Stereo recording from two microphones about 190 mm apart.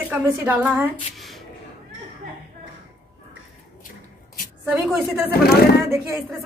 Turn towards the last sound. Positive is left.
turn(degrees=-15)  # may be behind; listen again after turning